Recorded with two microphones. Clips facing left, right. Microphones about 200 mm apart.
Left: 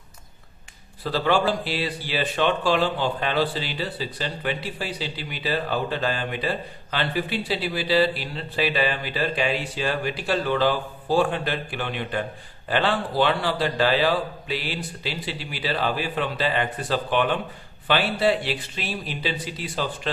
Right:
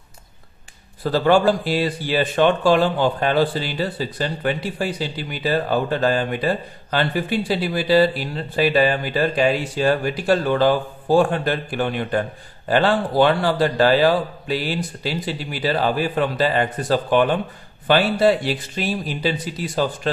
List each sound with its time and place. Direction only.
1.0 s a man's voice: 45° right (ahead or behind)